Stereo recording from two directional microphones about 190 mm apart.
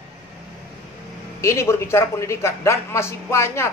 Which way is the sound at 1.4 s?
15° left (ahead or behind).